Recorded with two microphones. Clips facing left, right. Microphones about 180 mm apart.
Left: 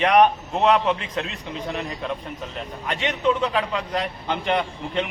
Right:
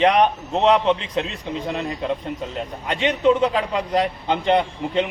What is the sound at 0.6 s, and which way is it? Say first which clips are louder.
Speech: right 2 dB; 25° right (ahead or behind).